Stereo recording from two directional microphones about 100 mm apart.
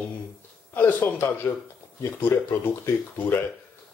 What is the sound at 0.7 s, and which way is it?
Speech, 20° left (ahead or behind).